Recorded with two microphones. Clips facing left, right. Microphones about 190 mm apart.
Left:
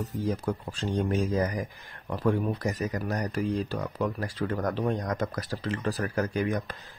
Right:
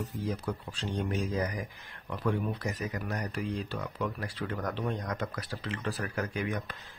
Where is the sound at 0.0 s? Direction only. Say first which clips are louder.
Left 5 dB; 45° left (ahead or behind).